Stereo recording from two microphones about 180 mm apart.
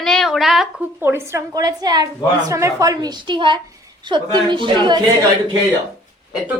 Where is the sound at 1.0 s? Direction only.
15° right (ahead or behind).